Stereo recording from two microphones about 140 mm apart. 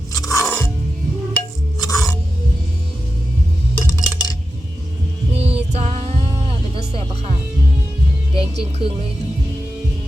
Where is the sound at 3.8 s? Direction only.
30° left (ahead or behind).